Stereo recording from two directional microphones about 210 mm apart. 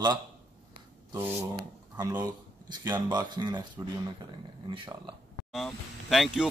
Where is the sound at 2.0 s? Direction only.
20° right (ahead or behind).